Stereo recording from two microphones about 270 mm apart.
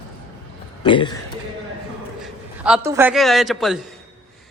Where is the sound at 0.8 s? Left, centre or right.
Centre.